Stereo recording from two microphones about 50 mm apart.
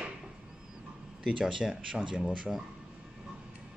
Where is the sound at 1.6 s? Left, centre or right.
Centre.